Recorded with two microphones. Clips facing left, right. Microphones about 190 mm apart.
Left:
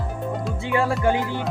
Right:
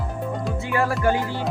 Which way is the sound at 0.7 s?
20° left (ahead or behind).